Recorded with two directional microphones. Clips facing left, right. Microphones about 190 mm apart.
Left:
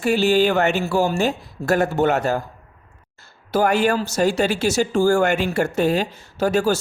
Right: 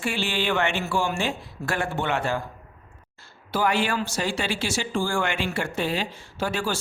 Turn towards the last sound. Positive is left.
turn(degrees=45)  # may be behind; listen again after turning